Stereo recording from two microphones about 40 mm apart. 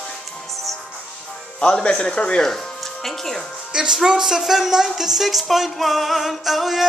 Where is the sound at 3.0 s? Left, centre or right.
Centre.